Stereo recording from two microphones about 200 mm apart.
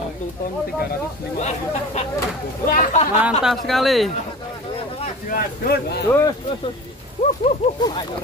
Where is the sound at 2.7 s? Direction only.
40° left (ahead or behind).